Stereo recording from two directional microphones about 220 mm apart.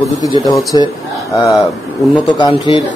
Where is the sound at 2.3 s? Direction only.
20° left (ahead or behind).